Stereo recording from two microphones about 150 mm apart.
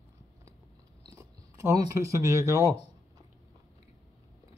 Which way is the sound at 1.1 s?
20° right (ahead or behind).